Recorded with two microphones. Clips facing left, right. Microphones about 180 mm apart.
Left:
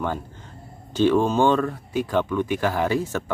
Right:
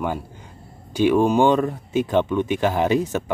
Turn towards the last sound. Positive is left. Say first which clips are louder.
# right 3 dB
turn(degrees=-20)  # may be behind; listen again after turning